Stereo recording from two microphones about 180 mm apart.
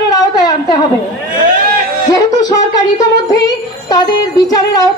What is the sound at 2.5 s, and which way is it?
Speech, 20° left (ahead or behind).